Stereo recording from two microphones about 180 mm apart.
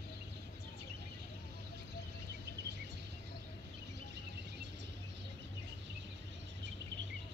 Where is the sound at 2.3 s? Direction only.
70° right (ahead or behind).